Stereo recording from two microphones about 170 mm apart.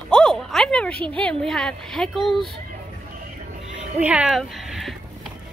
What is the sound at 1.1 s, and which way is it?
A woman's voice, 5° left (ahead or behind).